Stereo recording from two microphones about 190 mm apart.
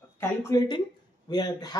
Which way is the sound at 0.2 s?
15° left (ahead or behind).